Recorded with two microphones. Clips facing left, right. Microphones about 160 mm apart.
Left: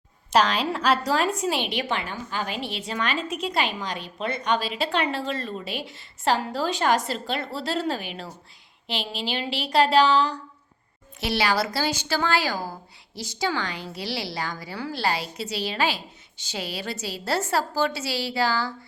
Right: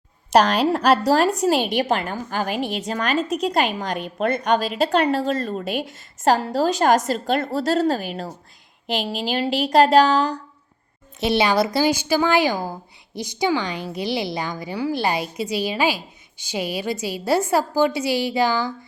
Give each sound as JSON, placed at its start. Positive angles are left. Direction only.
{"t": 0.5, "sound": "a woman's voice", "side_deg": -45}
{"t": 11.2, "sound": "a woman's voice", "side_deg": -20}